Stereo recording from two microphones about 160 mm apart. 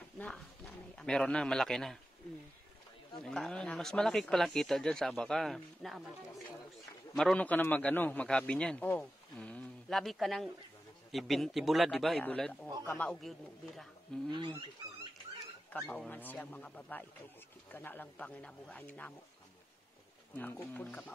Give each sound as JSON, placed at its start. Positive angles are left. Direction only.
{"t": 0.2, "sound": "speech", "side_deg": 5}
{"t": 3.3, "sound": "a man's voice", "side_deg": 5}
{"t": 14.3, "sound": "speech", "side_deg": -25}
{"t": 15.7, "sound": "a man's voice", "side_deg": 10}
{"t": 20.3, "sound": "a man's voice", "side_deg": 10}